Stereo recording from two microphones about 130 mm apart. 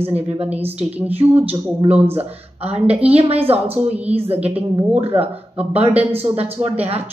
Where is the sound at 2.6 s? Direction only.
50° right (ahead or behind).